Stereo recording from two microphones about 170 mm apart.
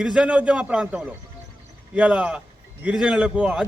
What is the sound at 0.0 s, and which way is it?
A man's voice, 5° right (ahead or behind).